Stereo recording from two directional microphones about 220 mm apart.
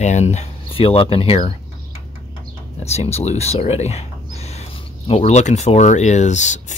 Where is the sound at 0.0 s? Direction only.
30° left (ahead or behind).